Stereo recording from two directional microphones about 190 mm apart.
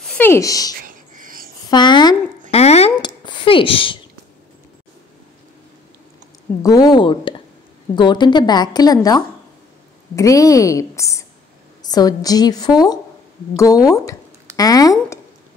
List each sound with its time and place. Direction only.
0.0 s speech: 10° left (ahead or behind)
0.7 s whispering: 45° right (ahead or behind)
1.7 s a sound: 25° left (ahead or behind)
2.5 s a sound: 35° left (ahead or behind)
3.3 s speech: 25° left (ahead or behind)
6.6 s a woman's voice: 20° left (ahead or behind)